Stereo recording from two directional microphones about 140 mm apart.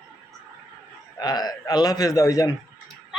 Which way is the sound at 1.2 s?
30° left (ahead or behind).